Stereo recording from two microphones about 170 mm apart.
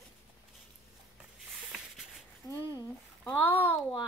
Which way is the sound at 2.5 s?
20° left (ahead or behind).